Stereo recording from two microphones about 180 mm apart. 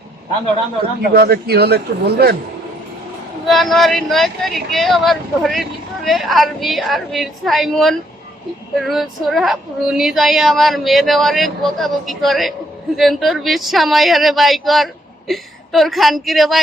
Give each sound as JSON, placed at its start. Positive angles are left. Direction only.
{"t": 1.1, "sound": "speech", "side_deg": -60}
{"t": 3.4, "sound": "speech", "side_deg": 0}